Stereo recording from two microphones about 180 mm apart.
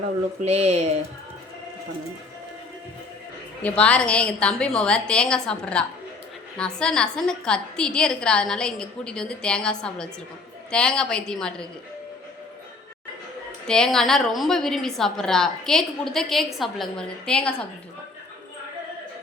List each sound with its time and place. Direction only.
0.4 s speech: 35° right (ahead or behind)
3.6 s a woman's voice: 5° left (ahead or behind)
13.7 s a woman's voice: 5° left (ahead or behind)